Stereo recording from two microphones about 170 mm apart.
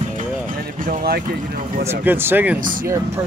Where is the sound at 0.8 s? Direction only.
60° right (ahead or behind).